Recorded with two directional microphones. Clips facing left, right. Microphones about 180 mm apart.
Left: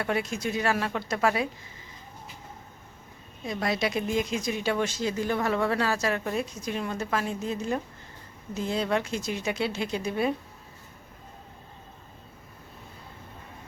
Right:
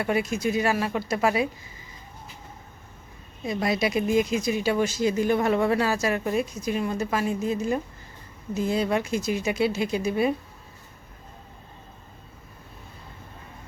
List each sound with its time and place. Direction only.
0.0 s speech: 10° right (ahead or behind)
3.4 s speech: 10° right (ahead or behind)